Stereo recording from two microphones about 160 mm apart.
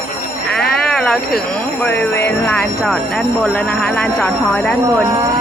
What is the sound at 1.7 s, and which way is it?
Speech, 10° left (ahead or behind).